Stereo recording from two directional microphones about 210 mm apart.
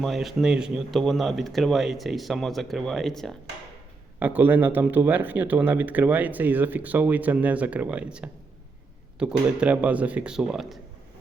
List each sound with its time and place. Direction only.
0.0 s speech: centre (ahead or behind)
4.2 s speech: 10° right (ahead or behind)